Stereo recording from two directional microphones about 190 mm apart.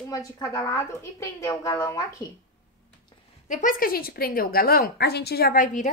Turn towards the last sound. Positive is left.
turn(degrees=45)  # may be behind; listen again after turning